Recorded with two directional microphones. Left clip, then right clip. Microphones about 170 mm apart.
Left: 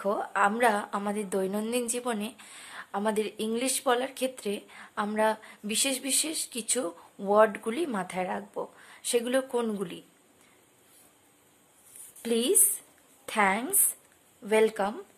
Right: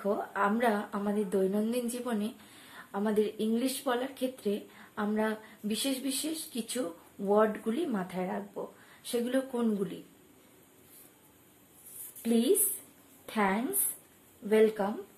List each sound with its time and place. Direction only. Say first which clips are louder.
0.0 s a woman's voice: left 4 dB; 50° left (ahead or behind)
12.2 s a woman's voice: left 1 dB; 55° left (ahead or behind)